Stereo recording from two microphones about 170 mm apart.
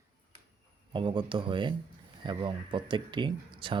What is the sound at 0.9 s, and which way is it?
Speech, 30° right (ahead or behind).